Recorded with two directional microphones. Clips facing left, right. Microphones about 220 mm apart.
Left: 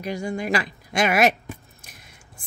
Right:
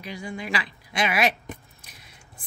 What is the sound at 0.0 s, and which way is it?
Speech, 45° left (ahead or behind).